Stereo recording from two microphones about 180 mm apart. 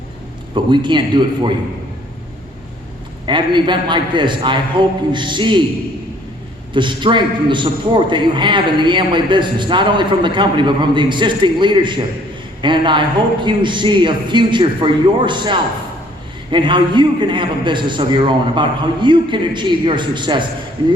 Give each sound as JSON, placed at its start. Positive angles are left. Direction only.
{"t": 0.5, "sound": "a man's voice", "side_deg": -25}
{"t": 3.2, "sound": "a man's voice", "side_deg": -25}
{"t": 6.7, "sound": "a man's voice", "side_deg": -25}